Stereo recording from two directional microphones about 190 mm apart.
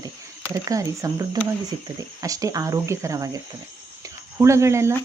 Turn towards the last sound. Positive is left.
turn(degrees=-15)  # may be behind; listen again after turning